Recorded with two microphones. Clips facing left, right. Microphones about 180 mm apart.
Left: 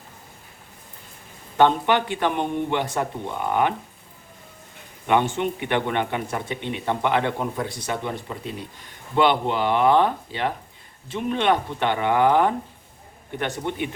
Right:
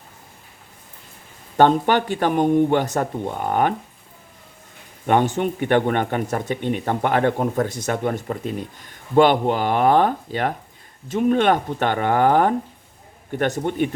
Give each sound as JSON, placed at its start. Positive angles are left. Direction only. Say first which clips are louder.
{"t": 1.5, "sound": "speech", "louder": "right 3 dB", "side_deg": -45}
{"t": 5.0, "sound": "speech", "louder": "right 2 dB", "side_deg": -45}